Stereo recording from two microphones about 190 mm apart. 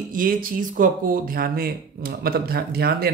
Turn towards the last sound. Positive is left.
turn(degrees=-55)  # may be behind; listen again after turning